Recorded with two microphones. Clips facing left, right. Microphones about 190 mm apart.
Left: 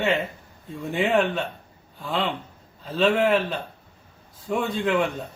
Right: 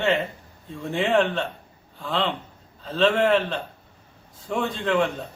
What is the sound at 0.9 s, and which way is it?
A man's voice, centre (ahead or behind).